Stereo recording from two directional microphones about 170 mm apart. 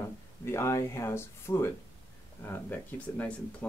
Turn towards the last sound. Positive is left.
turn(degrees=10)  # may be behind; listen again after turning